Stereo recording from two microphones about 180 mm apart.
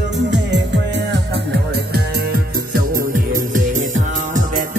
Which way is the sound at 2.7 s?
50° right (ahead or behind).